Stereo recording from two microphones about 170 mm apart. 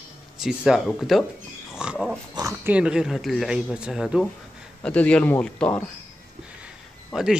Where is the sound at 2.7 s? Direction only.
5° right (ahead or behind).